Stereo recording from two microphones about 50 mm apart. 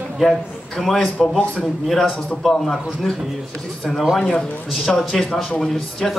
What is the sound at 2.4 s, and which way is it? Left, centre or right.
Speech, centre.